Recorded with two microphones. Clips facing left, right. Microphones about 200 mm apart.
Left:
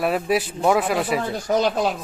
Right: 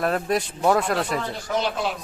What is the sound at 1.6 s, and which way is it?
Speech, 40° left (ahead or behind).